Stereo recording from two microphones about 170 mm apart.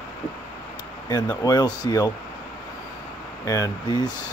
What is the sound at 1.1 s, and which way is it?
Speech, 20° left (ahead or behind).